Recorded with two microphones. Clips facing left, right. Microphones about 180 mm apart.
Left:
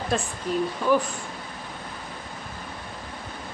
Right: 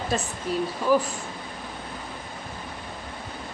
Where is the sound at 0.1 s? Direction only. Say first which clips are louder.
Left 1 dB; centre (ahead or behind).